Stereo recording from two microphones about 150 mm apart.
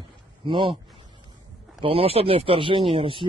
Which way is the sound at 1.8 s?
40° right (ahead or behind).